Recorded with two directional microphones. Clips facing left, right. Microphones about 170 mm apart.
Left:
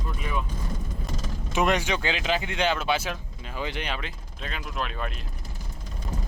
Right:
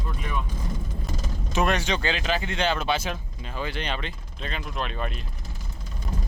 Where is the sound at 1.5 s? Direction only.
15° left (ahead or behind).